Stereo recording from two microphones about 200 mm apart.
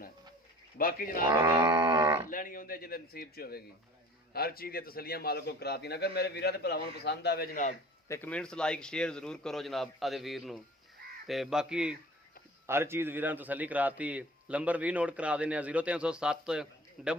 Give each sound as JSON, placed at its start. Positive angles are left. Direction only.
{"t": 0.8, "sound": "a man's voice", "side_deg": 45}
{"t": 1.3, "sound": "grunt", "side_deg": -20}
{"t": 2.3, "sound": "a man's voice", "side_deg": 45}
{"t": 8.0, "sound": "a man's voice", "side_deg": 10}